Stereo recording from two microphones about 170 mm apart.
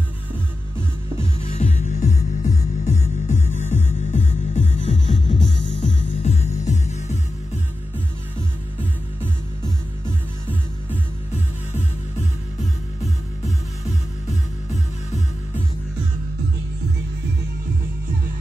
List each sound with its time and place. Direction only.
1.5 s music: 40° left (ahead or behind)